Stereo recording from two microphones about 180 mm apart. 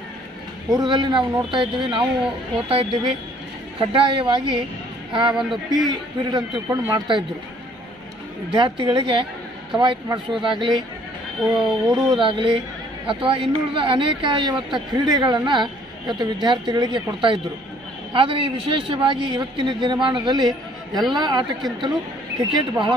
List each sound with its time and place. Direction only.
0.7 s speech: 25° right (ahead or behind)
5.3 s a man's voice: 5° right (ahead or behind)
5.9 s speech: 25° right (ahead or behind)
8.5 s speech: 25° right (ahead or behind)
11.5 s speech: 25° right (ahead or behind)